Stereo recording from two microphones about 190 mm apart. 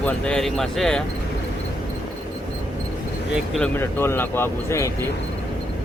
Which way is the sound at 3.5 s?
10° left (ahead or behind).